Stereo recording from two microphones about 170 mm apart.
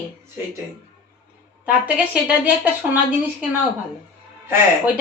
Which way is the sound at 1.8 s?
10° right (ahead or behind).